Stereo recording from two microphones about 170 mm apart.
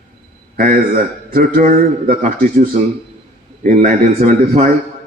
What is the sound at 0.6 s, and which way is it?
A man's voice, 55° right (ahead or behind).